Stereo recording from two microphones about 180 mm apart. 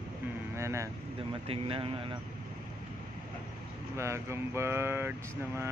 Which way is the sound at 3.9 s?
15° right (ahead or behind).